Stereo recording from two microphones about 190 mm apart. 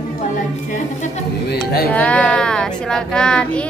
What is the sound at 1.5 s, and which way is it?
Music, 55° left (ahead or behind).